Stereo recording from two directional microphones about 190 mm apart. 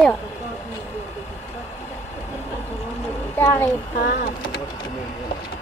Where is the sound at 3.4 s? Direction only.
15° left (ahead or behind).